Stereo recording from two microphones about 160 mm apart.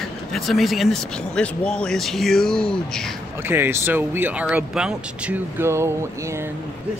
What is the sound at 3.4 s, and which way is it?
Speech, 15° right (ahead or behind).